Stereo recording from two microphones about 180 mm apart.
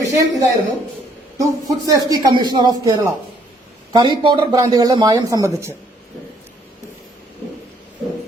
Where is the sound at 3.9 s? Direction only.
25° right (ahead or behind).